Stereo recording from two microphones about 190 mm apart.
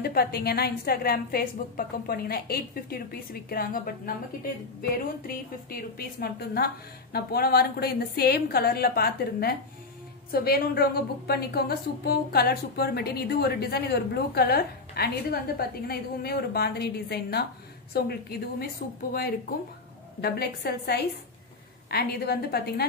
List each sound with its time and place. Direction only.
0.0 s a woman's voice: 55° left (ahead or behind)
20.2 s a woman's voice: 55° left (ahead or behind)